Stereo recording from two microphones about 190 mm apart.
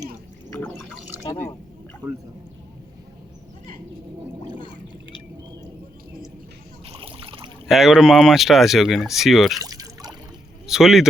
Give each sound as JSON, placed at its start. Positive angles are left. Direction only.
{"t": 1.2, "sound": "speech", "side_deg": 15}
{"t": 6.8, "sound": "splash", "side_deg": -30}
{"t": 7.7, "sound": "speech", "side_deg": 0}
{"t": 9.6, "sound": "a sound", "side_deg": -20}
{"t": 10.7, "sound": "speech", "side_deg": 0}